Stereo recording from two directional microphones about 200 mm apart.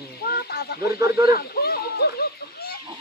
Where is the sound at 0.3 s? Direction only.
50° left (ahead or behind).